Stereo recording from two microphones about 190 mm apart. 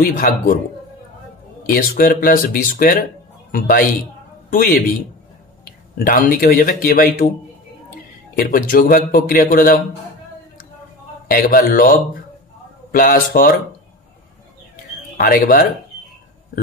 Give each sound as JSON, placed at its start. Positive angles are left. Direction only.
{"t": 0.2, "sound": "a man's voice", "side_deg": 45}
{"t": 1.7, "sound": "a man's voice", "side_deg": 50}
{"t": 5.9, "sound": "a man's voice", "side_deg": 50}
{"t": 8.4, "sound": "a man's voice", "side_deg": 50}
{"t": 11.2, "sound": "a man's voice", "side_deg": 50}
{"t": 15.1, "sound": "a man's voice", "side_deg": 50}